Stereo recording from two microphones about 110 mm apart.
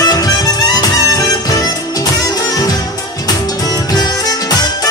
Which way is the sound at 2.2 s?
35° left (ahead or behind).